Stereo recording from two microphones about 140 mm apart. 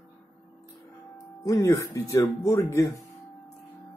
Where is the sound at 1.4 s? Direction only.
25° left (ahead or behind).